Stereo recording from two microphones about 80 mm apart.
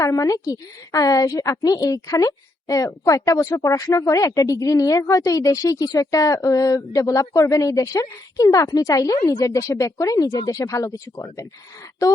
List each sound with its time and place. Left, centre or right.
0.0 s a woman's voice: left